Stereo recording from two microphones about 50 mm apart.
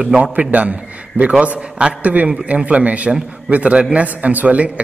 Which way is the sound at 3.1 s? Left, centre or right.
Centre.